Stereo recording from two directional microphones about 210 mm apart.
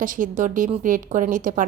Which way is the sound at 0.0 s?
40° right (ahead or behind).